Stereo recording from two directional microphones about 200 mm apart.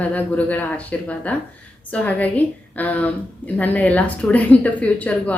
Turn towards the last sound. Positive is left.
turn(degrees=5)  # may be behind; listen again after turning